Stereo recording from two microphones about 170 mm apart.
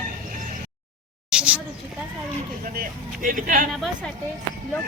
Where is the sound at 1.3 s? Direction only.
5° right (ahead or behind).